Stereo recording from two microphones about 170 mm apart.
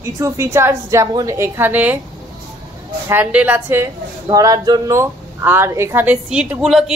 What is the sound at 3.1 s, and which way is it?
A woman's voice, 10° right (ahead or behind).